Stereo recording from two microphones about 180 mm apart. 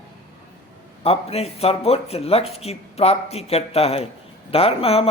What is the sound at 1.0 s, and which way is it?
Speech, 35° left (ahead or behind).